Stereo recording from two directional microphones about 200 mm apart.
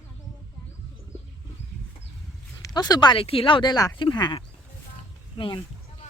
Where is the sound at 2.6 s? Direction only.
20° left (ahead or behind).